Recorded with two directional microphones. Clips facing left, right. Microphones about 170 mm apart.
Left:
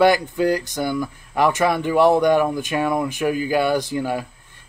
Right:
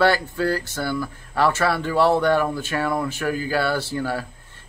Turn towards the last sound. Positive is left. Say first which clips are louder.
# left 3 dB
turn(degrees=15)  # may be behind; listen again after turning